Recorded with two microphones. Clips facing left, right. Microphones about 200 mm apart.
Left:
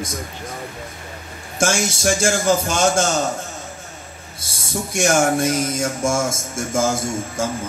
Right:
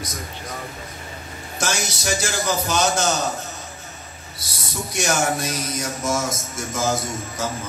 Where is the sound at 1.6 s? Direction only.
50° left (ahead or behind).